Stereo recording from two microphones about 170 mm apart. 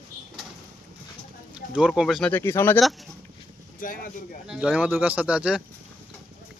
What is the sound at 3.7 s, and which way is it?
Speech, 55° left (ahead or behind).